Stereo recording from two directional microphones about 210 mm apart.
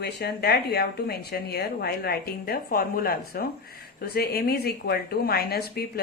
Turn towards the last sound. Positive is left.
turn(degrees=50)  # may be behind; listen again after turning